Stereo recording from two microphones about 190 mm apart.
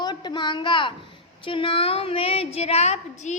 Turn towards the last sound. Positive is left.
turn(degrees=35)  # may be behind; listen again after turning